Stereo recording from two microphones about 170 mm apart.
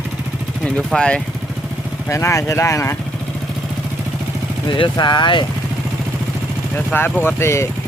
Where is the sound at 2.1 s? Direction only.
15° left (ahead or behind).